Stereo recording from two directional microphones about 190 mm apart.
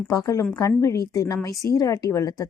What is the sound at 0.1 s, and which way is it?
A woman's voice, 15° left (ahead or behind).